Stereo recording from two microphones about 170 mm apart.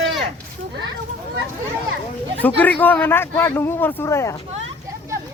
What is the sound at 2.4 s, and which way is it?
Speech, 10° left (ahead or behind).